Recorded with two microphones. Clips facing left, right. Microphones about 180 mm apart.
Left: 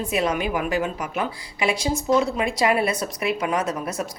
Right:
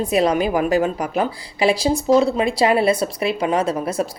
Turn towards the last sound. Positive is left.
turn(degrees=-30)  # may be behind; listen again after turning